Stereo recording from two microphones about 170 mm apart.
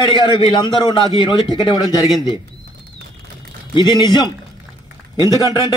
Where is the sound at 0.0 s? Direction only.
25° left (ahead or behind).